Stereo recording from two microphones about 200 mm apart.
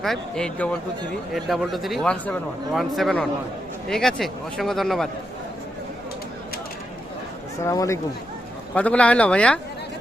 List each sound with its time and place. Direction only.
0.0 s speech: 5° left (ahead or behind)
7.7 s speech: 15° left (ahead or behind)
8.7 s speech: 5° left (ahead or behind)